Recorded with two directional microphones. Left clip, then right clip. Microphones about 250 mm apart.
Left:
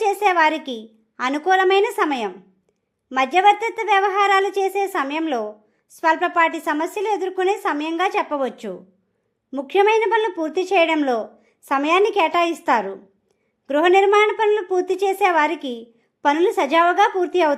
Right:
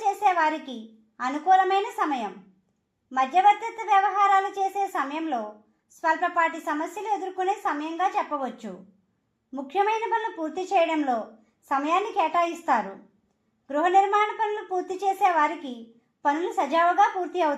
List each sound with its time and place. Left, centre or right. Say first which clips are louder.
0.0 s a woman's voice: left 5 dB; left